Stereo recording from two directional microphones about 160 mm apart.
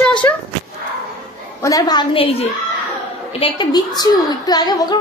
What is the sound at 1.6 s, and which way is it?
A woman's voice, 25° left (ahead or behind).